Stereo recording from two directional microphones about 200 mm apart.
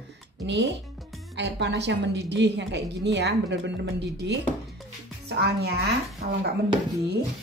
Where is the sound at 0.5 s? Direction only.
60° right (ahead or behind).